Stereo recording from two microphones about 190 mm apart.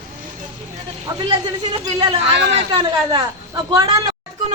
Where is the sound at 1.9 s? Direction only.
30° right (ahead or behind).